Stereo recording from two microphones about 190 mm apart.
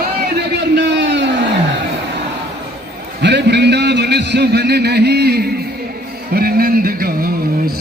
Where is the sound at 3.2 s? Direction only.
65° right (ahead or behind).